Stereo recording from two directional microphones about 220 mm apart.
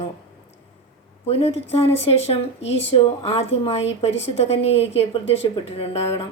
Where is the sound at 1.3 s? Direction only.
25° left (ahead or behind).